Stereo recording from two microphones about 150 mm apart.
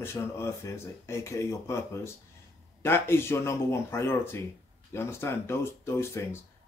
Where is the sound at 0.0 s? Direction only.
15° left (ahead or behind).